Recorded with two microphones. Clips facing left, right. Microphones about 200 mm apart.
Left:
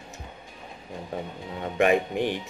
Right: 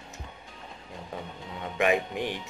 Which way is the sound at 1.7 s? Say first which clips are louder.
Left 4 dB; 45° left (ahead or behind).